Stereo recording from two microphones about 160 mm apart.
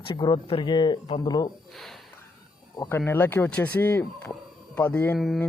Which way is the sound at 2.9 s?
15° left (ahead or behind).